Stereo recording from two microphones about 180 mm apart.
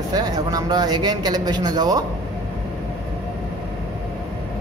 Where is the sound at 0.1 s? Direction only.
20° right (ahead or behind).